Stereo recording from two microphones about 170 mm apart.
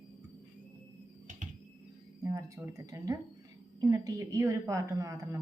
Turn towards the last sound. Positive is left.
turn(degrees=-20)  # may be behind; listen again after turning